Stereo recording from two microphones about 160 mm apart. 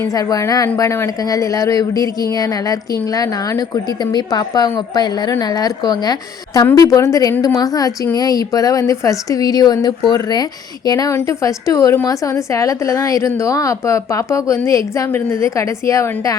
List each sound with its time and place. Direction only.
0.1 s a woman's voice: 20° left (ahead or behind)
4.1 s a woman's voice: 25° left (ahead or behind)